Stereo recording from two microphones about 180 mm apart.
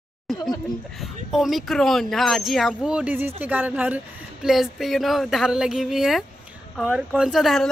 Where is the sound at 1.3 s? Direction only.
Centre (ahead or behind).